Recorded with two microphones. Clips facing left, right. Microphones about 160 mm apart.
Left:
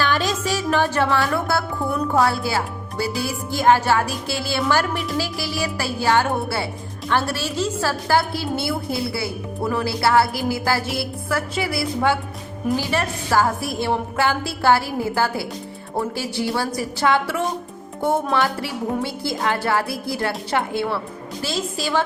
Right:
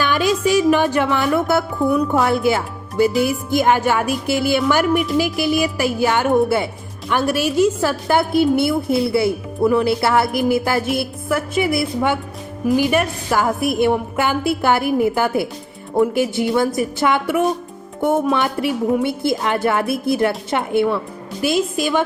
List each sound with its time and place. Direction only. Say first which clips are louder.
0.0 s music: right 4 dB; 15° right (ahead or behind)
2.1 s a woman's voice: right 3 dB; 20° right (ahead or behind)